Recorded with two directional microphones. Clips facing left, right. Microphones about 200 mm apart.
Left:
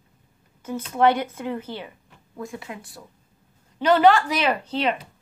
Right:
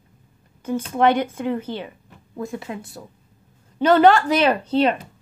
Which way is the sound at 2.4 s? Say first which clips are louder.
Right 5 dB; 30° right (ahead or behind).